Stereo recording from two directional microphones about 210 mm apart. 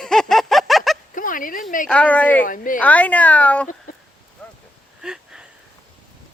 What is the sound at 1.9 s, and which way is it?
Speech, 5° left (ahead or behind).